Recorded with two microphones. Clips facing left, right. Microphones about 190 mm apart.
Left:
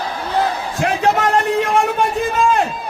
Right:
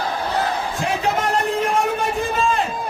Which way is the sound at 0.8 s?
70° left (ahead or behind).